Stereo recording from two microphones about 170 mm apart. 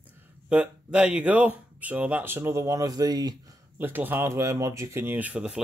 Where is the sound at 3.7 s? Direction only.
10° right (ahead or behind).